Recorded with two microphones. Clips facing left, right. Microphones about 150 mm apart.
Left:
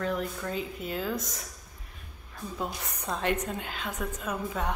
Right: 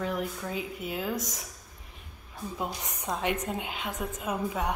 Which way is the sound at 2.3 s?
15° right (ahead or behind).